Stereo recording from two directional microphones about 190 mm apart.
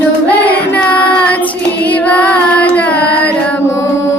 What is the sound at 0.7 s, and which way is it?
Child singing, 5° left (ahead or behind).